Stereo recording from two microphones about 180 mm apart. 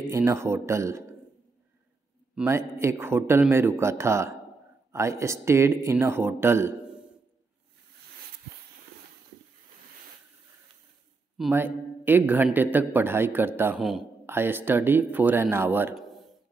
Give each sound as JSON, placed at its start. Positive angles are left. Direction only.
{"t": 0.1, "sound": "a man's voice", "side_deg": -15}
{"t": 2.3, "sound": "a man's voice", "side_deg": -15}
{"t": 11.5, "sound": "a man's voice", "side_deg": -10}